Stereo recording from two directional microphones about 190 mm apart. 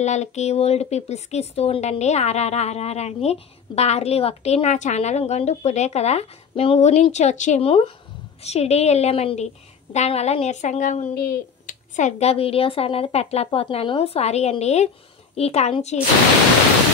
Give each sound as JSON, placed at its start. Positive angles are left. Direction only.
{"t": 0.0, "sound": "speech", "side_deg": 35}